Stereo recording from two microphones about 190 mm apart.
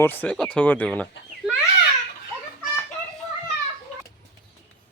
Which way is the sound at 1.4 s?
Centre (ahead or behind).